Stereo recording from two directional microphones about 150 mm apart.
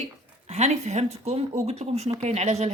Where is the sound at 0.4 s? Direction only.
50° right (ahead or behind).